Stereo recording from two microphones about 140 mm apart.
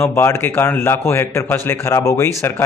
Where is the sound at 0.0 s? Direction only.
15° left (ahead or behind).